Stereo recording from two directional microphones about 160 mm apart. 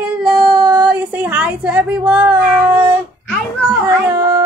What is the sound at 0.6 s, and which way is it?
Speech, 25° right (ahead or behind).